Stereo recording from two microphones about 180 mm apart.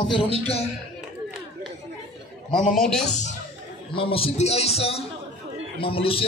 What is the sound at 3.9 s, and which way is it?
Speech, 30° left (ahead or behind).